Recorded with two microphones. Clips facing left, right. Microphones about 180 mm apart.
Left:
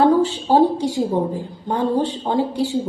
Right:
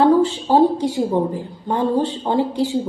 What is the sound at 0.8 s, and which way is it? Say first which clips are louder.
A woman's voice: right 1 dB; 20° right (ahead or behind).